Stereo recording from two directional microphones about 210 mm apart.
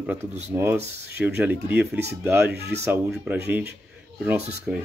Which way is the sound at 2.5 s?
50° right (ahead or behind).